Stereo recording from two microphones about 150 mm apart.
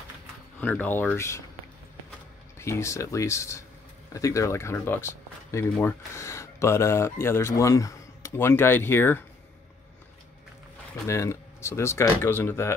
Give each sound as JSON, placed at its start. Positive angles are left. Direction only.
{"t": 0.6, "sound": "speech", "side_deg": 10}
{"t": 2.6, "sound": "speech", "side_deg": 20}
{"t": 11.1, "sound": "speech", "side_deg": 20}